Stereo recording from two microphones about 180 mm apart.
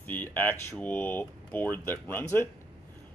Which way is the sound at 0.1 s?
10° left (ahead or behind).